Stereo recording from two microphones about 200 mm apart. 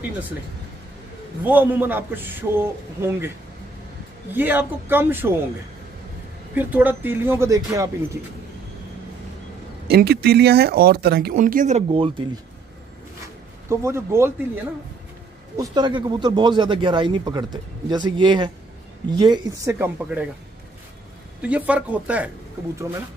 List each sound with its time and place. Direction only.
1.4 s a man's voice: 10° right (ahead or behind)
4.3 s a man's voice: 10° right (ahead or behind)
6.5 s a man's voice: 10° right (ahead or behind)
9.8 s speech: 50° right (ahead or behind); by 12.3 s 25° right (ahead or behind)
13.7 s a man's voice: 15° right (ahead or behind)
21.4 s a man's voice: 5° right (ahead or behind)